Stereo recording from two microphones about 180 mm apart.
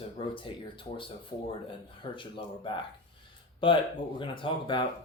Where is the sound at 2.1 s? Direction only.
25° left (ahead or behind).